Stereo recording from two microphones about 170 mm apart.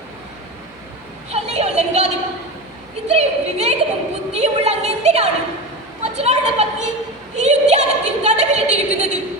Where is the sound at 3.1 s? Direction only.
40° right (ahead or behind).